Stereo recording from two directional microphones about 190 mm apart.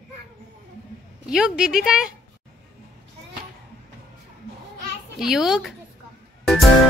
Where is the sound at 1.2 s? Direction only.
5° right (ahead or behind).